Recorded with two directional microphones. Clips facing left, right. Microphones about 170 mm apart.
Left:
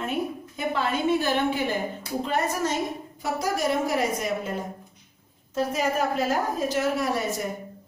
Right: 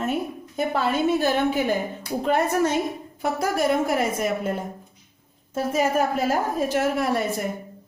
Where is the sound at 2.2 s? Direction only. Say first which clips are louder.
Right 5 dB; 60° right (ahead or behind).